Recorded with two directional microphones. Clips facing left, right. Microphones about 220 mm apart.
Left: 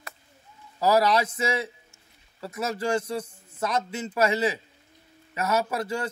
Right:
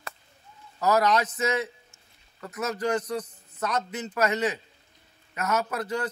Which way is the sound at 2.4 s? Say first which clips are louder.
Even; 30° left (ahead or behind).